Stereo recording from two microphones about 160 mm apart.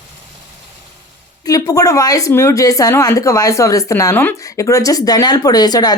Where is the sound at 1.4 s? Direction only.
20° left (ahead or behind).